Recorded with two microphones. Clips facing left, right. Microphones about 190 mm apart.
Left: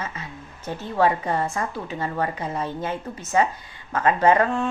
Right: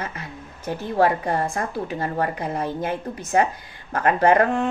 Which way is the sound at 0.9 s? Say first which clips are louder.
Right 1 dB; 40° right (ahead or behind).